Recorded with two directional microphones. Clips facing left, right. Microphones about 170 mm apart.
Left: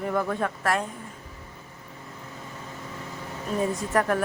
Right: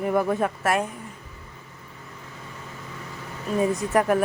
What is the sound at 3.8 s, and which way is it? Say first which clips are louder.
Speech: right 3 dB; 15° right (ahead or behind).